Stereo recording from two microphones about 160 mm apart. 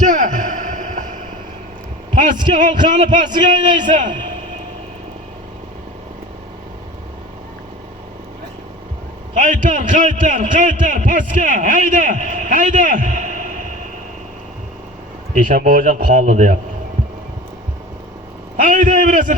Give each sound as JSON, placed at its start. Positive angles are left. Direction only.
{"t": 0.0, "sound": "a sound", "side_deg": -55}
{"t": 2.9, "sound": "a man's voice", "side_deg": -50}
{"t": 3.5, "sound": "a man's voice", "side_deg": -30}
{"t": 3.9, "sound": "a man's voice", "side_deg": -55}
{"t": 9.3, "sound": "a man's voice", "side_deg": -55}
{"t": 15.4, "sound": "a man's voice", "side_deg": -55}
{"t": 18.5, "sound": "a man's voice", "side_deg": -55}